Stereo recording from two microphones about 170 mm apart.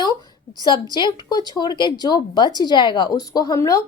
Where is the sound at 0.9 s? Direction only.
25° left (ahead or behind).